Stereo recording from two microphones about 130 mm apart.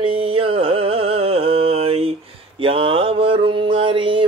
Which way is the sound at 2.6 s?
45° right (ahead or behind).